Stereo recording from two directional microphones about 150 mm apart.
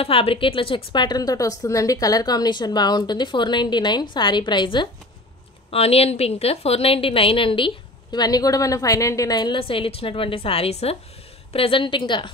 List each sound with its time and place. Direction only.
0.0 s a woman's voice: 40° left (ahead or behind)
5.7 s a woman's voice: 40° left (ahead or behind)